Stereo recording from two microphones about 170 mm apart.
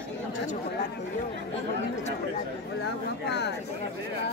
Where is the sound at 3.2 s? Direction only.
80° left.